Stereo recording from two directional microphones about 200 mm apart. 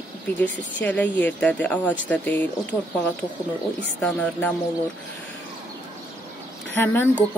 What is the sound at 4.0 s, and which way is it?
Speech, 5° left (ahead or behind).